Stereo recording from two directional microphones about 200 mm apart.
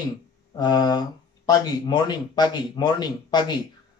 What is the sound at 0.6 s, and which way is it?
Speech, 20° left (ahead or behind).